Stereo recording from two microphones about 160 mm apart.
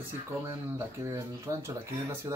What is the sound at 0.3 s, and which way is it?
Speech, 15° right (ahead or behind).